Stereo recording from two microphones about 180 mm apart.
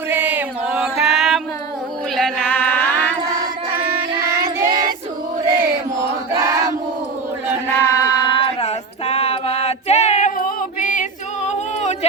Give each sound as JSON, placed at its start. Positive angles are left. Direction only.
{"t": 0.1, "sound": "mantra", "side_deg": -10}
{"t": 2.1, "sound": "female singing", "side_deg": 5}
{"t": 3.8, "sound": "child singing", "side_deg": -15}
{"t": 5.5, "sound": "a sound", "side_deg": -15}
{"t": 7.8, "sound": "female singing", "side_deg": 20}
{"t": 11.4, "sound": "a sound", "side_deg": 40}